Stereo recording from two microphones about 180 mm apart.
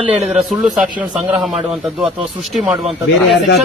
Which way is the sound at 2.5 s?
Centre (ahead or behind).